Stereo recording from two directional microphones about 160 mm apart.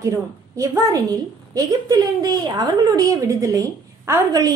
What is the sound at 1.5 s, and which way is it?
Speech, 20° right (ahead or behind).